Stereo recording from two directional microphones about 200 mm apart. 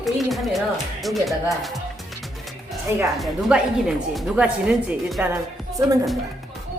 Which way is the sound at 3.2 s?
Centre (ahead or behind).